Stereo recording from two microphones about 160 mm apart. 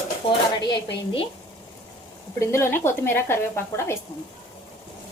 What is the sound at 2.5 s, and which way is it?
A woman's voice, 15° left (ahead or behind).